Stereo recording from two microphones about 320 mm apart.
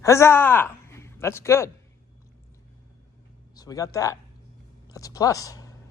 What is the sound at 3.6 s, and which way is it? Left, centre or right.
Speech, centre.